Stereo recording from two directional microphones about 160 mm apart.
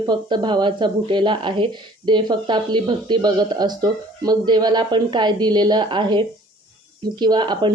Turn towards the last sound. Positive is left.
turn(degrees=-30)  # may be behind; listen again after turning